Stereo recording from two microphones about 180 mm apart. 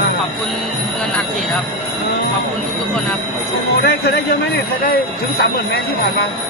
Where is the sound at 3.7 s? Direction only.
65° left (ahead or behind).